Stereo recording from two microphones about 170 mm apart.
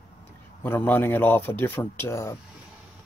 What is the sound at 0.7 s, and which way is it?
A man's voice, 10° left (ahead or behind).